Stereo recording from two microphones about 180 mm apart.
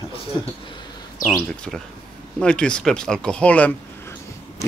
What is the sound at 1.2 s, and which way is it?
Speech, 5° left (ahead or behind).